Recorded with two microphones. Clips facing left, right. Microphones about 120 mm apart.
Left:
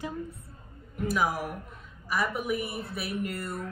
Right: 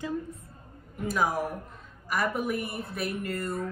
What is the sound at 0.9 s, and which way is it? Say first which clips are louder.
A man's voice: even; centre (ahead or behind).